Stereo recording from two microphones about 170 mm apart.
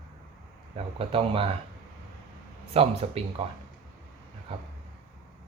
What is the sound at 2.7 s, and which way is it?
Speech, 35° right (ahead or behind).